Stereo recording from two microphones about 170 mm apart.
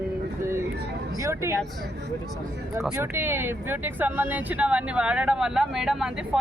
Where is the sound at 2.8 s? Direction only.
10° right (ahead or behind).